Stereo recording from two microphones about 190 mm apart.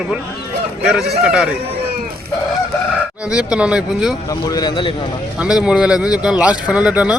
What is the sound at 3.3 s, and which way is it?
Speech, 5° right (ahead or behind).